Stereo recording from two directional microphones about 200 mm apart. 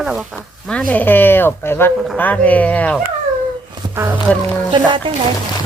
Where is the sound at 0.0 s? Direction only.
5° right (ahead or behind).